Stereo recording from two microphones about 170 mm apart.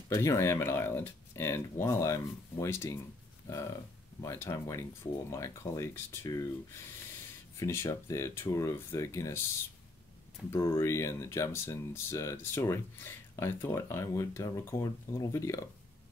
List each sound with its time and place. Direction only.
0.1 s speech: 15° left (ahead or behind)
10.4 s speech: 5° right (ahead or behind)
10.8 s speech: 15° left (ahead or behind)